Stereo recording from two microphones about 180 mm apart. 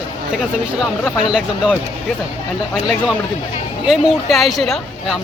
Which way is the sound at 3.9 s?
Centre (ahead or behind).